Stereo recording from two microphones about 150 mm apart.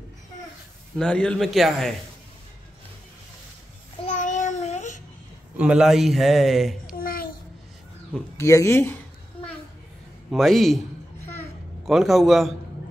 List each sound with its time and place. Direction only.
0.9 s a man's voice: 5° left (ahead or behind)
4.0 s child singing: 55° left (ahead or behind)
5.6 s a man's voice: 5° right (ahead or behind)
7.0 s babbling: 75° left (ahead or behind)
8.4 s speech: 20° left (ahead or behind)
10.3 s a man's voice: centre (ahead or behind)
11.8 s a man's voice: centre (ahead or behind)